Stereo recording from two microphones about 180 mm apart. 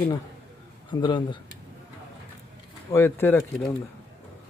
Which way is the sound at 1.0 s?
25° left (ahead or behind).